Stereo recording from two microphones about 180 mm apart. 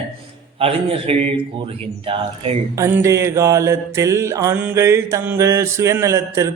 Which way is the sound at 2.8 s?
15° right (ahead or behind).